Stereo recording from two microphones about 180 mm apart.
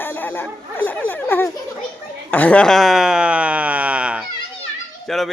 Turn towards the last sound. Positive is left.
turn(degrees=0)  # may be behind; listen again after turning